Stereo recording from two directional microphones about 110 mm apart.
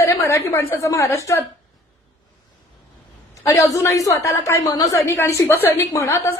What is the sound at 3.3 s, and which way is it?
A woman's voice, 25° left (ahead or behind).